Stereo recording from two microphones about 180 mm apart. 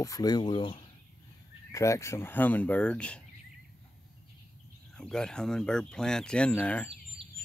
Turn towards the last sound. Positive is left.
turn(degrees=-30)  # may be behind; listen again after turning